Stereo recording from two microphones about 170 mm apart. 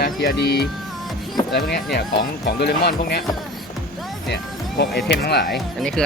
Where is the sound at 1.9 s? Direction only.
70° left (ahead or behind).